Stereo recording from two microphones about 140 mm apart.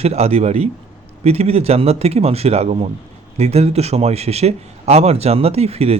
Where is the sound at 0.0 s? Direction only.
45° right (ahead or behind).